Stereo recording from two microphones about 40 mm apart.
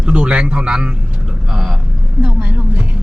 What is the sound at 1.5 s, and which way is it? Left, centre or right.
Speech, centre.